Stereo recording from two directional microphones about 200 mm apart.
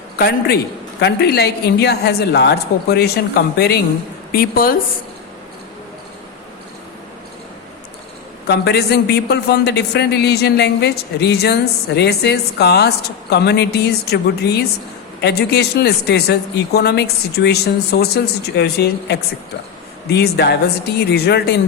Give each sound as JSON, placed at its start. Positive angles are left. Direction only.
{"t": 0.2, "sound": "a woman's voice", "side_deg": 50}
{"t": 8.4, "sound": "a woman's voice", "side_deg": 55}